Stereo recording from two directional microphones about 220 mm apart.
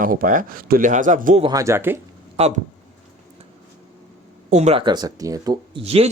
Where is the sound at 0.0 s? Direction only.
40° right (ahead or behind).